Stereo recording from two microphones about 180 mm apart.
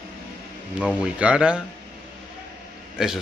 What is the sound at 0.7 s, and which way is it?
Speech, 5° right (ahead or behind).